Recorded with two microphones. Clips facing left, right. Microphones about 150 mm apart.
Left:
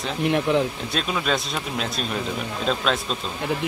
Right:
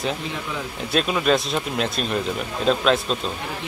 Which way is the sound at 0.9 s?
5° right (ahead or behind).